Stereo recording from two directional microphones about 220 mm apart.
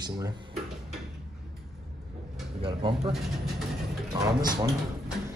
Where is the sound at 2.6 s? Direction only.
25° right (ahead or behind).